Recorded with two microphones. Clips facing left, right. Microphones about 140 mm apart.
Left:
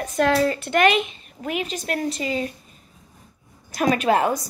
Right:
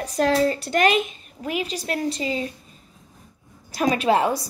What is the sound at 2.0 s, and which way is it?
Speech, 30° right (ahead or behind).